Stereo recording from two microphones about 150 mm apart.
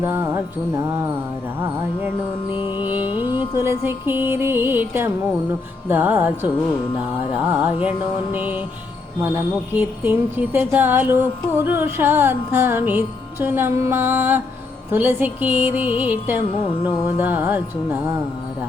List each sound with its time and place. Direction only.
0.0 s music: 15° right (ahead or behind)
2.5 s music: 35° left (ahead or behind)
2.7 s music: 10° right (ahead or behind)
9.7 s music: 15° right (ahead or behind)